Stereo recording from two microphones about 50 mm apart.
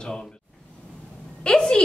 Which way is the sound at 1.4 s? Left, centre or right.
Centre.